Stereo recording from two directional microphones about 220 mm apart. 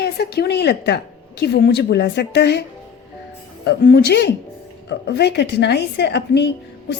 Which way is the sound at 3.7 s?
50° left (ahead or behind).